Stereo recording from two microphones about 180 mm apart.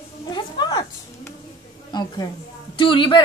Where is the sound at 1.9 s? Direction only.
20° left (ahead or behind).